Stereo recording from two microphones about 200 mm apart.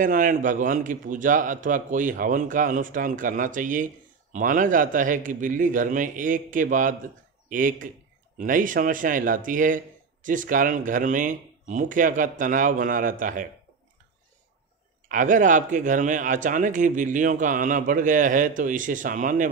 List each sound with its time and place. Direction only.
0.0 s a man's voice: 40° right (ahead or behind)
15.0 s a man's voice: 40° right (ahead or behind)